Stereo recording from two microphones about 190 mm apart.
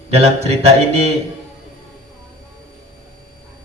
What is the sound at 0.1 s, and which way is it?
Speech, 35° right (ahead or behind).